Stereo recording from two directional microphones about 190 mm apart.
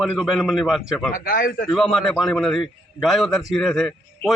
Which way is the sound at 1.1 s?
50° left (ahead or behind).